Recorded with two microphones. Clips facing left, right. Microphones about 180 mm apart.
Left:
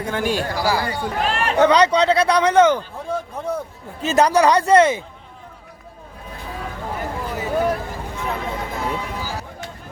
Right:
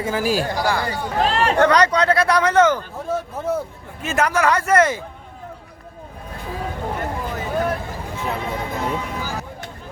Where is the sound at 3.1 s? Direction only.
5° right (ahead or behind).